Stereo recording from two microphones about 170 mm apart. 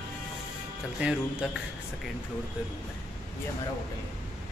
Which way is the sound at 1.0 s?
5° right (ahead or behind).